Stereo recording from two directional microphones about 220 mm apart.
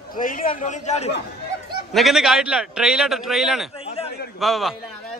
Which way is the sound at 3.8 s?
25° left (ahead or behind).